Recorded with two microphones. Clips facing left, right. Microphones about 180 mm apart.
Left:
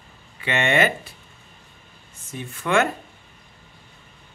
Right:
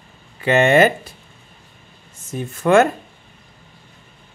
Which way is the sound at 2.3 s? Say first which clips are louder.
Right 9 dB; 45° right (ahead or behind).